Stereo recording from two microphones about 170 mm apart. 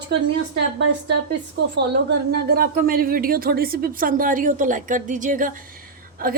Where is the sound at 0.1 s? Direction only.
90° right.